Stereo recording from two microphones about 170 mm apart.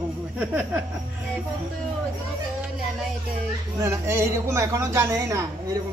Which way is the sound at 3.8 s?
15° right (ahead or behind).